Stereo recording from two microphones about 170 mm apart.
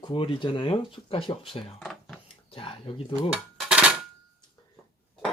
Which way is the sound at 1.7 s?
Centre (ahead or behind).